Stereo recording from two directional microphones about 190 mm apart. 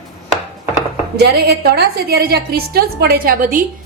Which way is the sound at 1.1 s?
55° right (ahead or behind).